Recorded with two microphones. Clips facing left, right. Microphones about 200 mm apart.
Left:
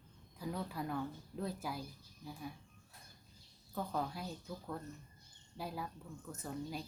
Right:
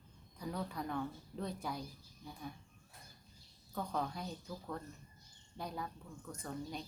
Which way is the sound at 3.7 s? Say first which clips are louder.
Even; 5° left (ahead or behind).